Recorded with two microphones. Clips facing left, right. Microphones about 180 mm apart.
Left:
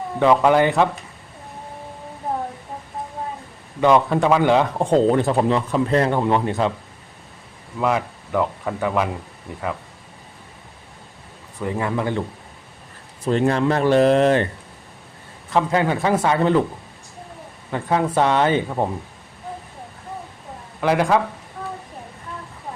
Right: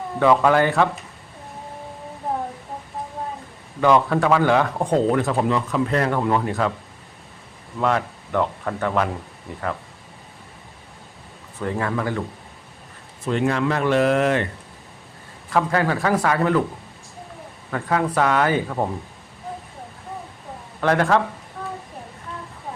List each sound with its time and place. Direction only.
0.2 s speech: 15° left (ahead or behind)
2.3 s a sound: centre (ahead or behind)
3.8 s speech: 20° left (ahead or behind)
7.8 s speech: 5° left (ahead or behind)
11.6 s speech: 10° left (ahead or behind)
13.2 s speech: 35° left (ahead or behind)
15.5 s speech: 20° left (ahead or behind)
17.7 s speech: 25° left (ahead or behind)
20.8 s speech: 10° left (ahead or behind)
21.6 s a sound: centre (ahead or behind)